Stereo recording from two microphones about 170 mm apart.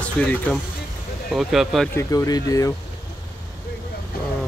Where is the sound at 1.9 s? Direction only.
20° left (ahead or behind).